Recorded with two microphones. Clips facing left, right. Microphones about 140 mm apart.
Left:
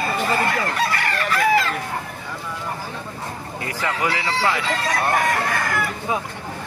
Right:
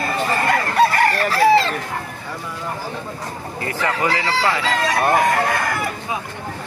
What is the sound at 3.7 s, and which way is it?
Speech, 10° left (ahead or behind).